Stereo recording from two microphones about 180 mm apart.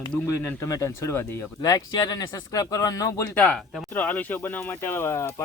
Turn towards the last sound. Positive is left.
turn(degrees=15)  # may be behind; listen again after turning